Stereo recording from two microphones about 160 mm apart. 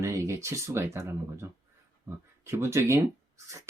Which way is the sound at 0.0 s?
20° right (ahead or behind).